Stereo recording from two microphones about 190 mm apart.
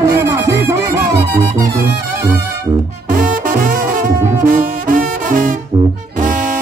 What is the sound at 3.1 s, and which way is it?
Music, 45° right (ahead or behind).